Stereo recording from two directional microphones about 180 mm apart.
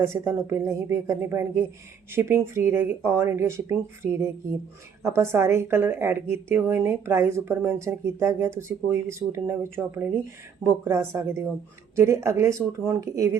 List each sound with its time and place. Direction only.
0.0 s a woman's voice: 15° right (ahead or behind)